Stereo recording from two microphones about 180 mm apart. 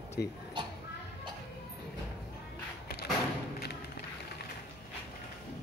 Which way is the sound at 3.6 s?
60° left (ahead or behind).